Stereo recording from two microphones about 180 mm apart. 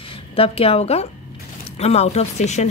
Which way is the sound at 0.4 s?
30° left (ahead or behind).